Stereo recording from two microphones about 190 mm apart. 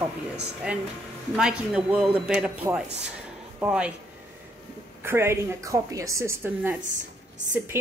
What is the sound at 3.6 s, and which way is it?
Speech, 5° right (ahead or behind).